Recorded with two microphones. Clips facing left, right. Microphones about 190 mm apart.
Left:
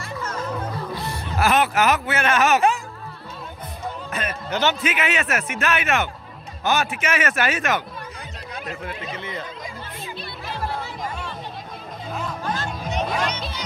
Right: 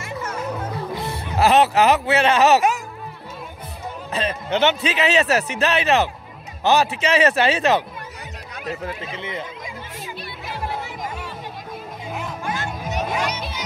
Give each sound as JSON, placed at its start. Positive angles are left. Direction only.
{"t": 0.9, "sound": "speech", "side_deg": -20}
{"t": 4.1, "sound": "a man's voice", "side_deg": -25}
{"t": 8.8, "sound": "speech", "side_deg": -25}
{"t": 10.5, "sound": "music", "side_deg": -15}